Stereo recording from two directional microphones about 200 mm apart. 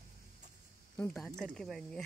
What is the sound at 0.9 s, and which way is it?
Speech, 5° left (ahead or behind).